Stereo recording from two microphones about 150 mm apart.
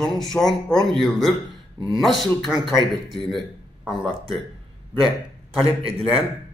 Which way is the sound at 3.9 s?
35° right (ahead or behind).